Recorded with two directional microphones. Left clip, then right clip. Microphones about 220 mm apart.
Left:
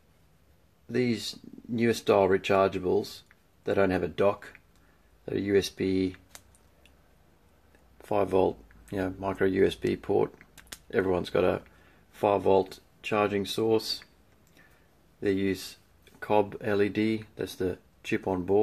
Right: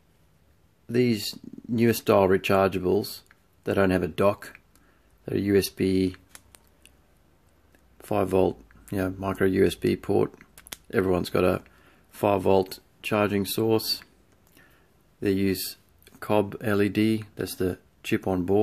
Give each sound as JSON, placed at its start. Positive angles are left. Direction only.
{"t": 0.8, "sound": "speech", "side_deg": -40}
{"t": 8.0, "sound": "speech", "side_deg": -40}
{"t": 15.1, "sound": "speech", "side_deg": -40}